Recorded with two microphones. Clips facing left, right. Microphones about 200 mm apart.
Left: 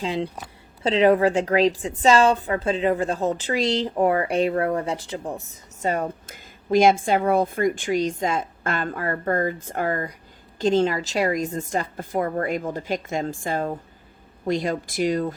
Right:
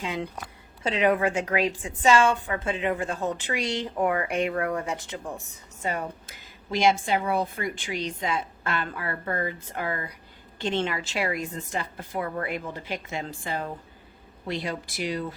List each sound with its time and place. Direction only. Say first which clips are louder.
0.0 s a woman's voice: left 5 dB; 35° left (ahead or behind)
5.8 s speech: left 6 dB; 45° left (ahead or behind)